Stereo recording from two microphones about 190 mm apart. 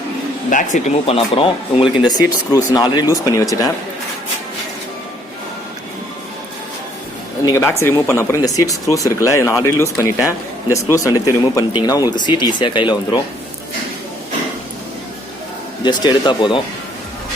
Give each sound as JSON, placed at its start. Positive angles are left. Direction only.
{"t": 0.5, "sound": "speech", "side_deg": 40}
{"t": 7.4, "sound": "speech", "side_deg": 15}
{"t": 15.8, "sound": "speech", "side_deg": 25}